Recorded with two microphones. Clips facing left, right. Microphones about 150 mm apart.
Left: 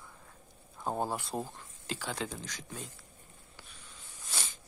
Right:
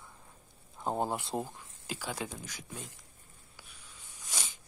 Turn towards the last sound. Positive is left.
turn(degrees=-15)  # may be behind; listen again after turning